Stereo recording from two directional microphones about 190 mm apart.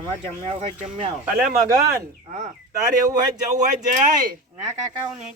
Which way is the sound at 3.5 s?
40° right (ahead or behind).